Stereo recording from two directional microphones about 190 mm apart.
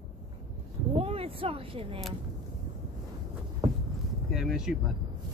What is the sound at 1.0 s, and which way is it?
Speech, 30° right (ahead or behind).